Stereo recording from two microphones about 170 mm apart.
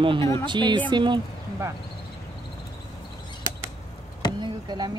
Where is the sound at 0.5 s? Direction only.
25° right (ahead or behind).